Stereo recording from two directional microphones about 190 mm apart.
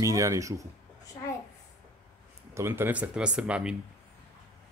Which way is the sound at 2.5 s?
15° right (ahead or behind).